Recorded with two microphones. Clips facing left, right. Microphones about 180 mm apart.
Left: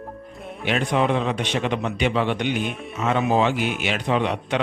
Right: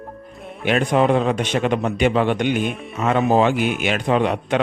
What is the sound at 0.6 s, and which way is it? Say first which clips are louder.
A man's voice: right 4 dB; 50° right (ahead or behind).